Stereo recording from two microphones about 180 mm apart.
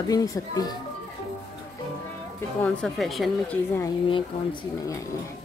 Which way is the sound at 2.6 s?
5° left (ahead or behind).